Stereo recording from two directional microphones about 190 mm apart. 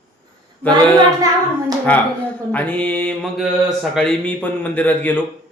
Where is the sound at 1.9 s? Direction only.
10° left (ahead or behind).